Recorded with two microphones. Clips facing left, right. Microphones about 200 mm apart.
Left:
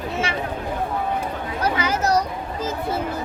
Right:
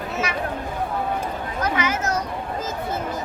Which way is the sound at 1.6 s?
30° left (ahead or behind).